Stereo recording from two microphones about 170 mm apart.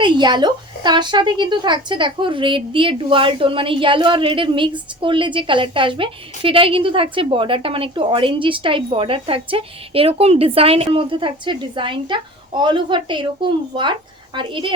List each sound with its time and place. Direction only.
0.0 s a woman's voice: 25° right (ahead or behind)